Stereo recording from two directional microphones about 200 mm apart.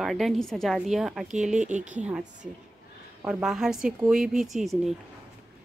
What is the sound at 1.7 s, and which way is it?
Speech, 35° right (ahead or behind).